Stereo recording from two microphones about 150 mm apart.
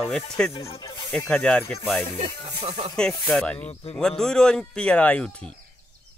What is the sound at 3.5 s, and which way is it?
Speech, 40° left (ahead or behind).